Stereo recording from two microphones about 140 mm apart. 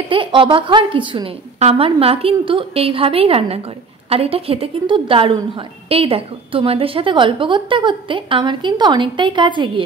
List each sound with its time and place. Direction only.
0.1 s a woman's voice: 40° right (ahead or behind)